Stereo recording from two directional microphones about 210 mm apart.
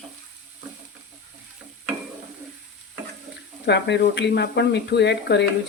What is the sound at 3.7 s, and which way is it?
Speech, 55° left (ahead or behind).